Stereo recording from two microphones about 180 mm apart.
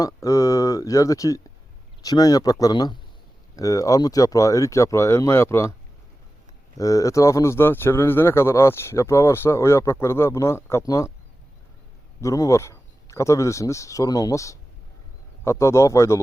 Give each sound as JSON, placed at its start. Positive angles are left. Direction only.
{"t": 0.0, "sound": "speech", "side_deg": 20}
{"t": 6.7, "sound": "speech", "side_deg": 20}
{"t": 12.2, "sound": "speech", "side_deg": 20}